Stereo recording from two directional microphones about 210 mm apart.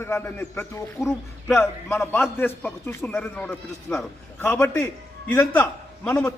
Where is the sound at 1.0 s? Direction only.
Centre (ahead or behind).